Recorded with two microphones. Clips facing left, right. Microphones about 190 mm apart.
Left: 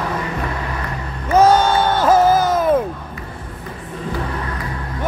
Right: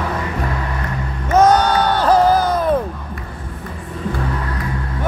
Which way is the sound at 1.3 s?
10° left (ahead or behind).